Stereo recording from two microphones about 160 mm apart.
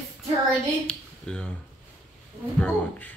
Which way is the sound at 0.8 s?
5° left (ahead or behind).